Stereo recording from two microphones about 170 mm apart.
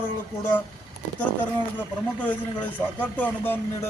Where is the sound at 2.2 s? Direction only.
10° left (ahead or behind).